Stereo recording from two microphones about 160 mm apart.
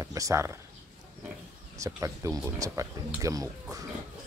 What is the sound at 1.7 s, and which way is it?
Speech, 20° right (ahead or behind).